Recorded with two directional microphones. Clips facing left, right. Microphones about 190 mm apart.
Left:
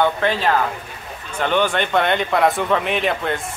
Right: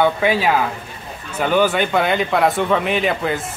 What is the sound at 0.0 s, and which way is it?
Speech, 10° right (ahead or behind).